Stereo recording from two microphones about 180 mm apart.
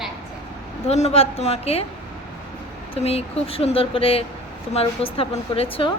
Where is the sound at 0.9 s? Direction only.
35° left (ahead or behind).